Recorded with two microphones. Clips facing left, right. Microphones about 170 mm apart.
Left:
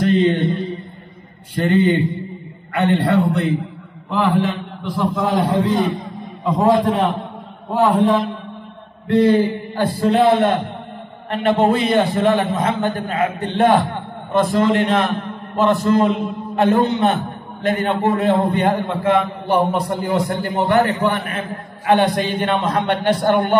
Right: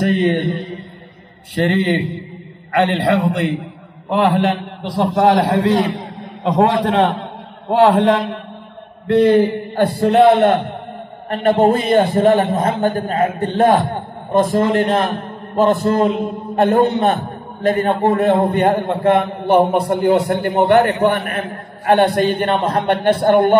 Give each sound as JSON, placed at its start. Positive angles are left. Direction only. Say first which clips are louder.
{"t": 0.0, "sound": "mantra", "louder": "even", "side_deg": -50}
{"t": 1.6, "sound": "a man's voice", "louder": "right 3 dB", "side_deg": -60}
{"t": 2.7, "sound": "a man's voice", "louder": "right 1 dB", "side_deg": -80}
{"t": 7.7, "sound": "a man's voice", "louder": "right 3 dB", "side_deg": -85}
{"t": 9.0, "sound": "a man's voice", "louder": "right 2 dB", "side_deg": -60}
{"t": 11.2, "sound": "a man's voice", "louder": "right 2 dB", "side_deg": -50}